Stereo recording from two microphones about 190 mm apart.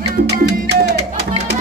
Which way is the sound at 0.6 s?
65° right (ahead or behind).